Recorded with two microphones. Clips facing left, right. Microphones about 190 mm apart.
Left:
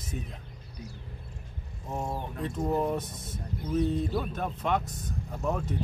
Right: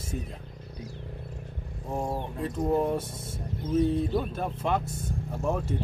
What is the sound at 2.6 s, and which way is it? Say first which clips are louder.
Speech: right 3 dB; 10° right (ahead or behind).